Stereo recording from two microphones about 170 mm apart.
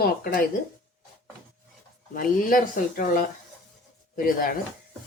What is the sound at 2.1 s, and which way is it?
Speech, 55° left (ahead or behind).